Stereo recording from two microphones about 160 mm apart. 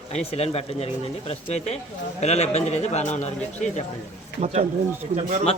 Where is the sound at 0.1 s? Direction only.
40° left (ahead or behind).